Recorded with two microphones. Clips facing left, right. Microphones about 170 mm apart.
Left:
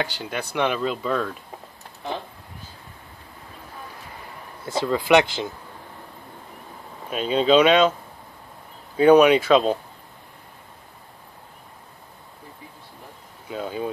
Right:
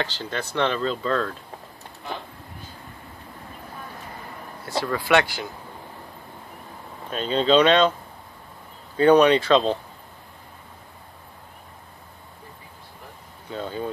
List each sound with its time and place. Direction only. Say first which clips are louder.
0.0 s speech: left 1 dB; 10° left (ahead or behind)
4.6 s speech: left 3 dB; 20° left (ahead or behind)
7.1 s speech: left 2 dB; 10° left (ahead or behind)
8.9 s speech: left 2 dB; 10° left (ahead or behind)
13.5 s speech: left 1 dB; 10° left (ahead or behind)